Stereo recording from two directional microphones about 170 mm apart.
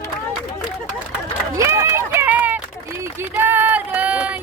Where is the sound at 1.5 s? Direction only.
15° right (ahead or behind).